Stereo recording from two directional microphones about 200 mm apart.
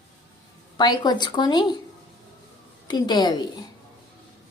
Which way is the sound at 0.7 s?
20° left (ahead or behind).